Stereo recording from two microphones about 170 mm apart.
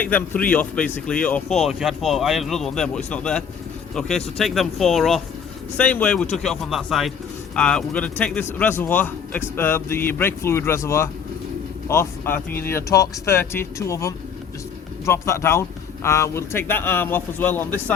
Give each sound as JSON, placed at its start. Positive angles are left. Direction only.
{"t": 0.0, "sound": "a man's voice", "side_deg": 10}